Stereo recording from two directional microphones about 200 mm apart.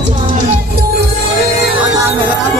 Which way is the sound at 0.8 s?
50° right (ahead or behind).